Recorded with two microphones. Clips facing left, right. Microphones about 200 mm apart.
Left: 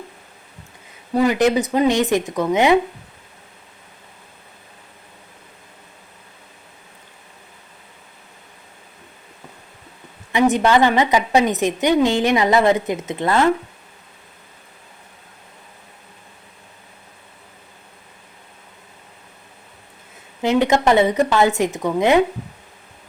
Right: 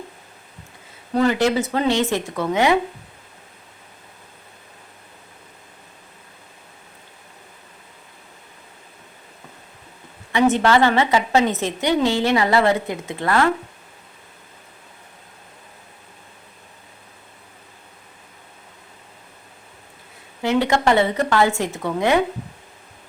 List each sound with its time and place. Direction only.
1.1 s a woman's voice: 15° left (ahead or behind)
10.3 s a woman's voice: 15° left (ahead or behind)
20.4 s a woman's voice: 20° left (ahead or behind)